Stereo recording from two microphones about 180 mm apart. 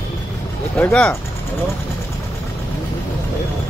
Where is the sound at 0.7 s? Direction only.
10° left (ahead or behind).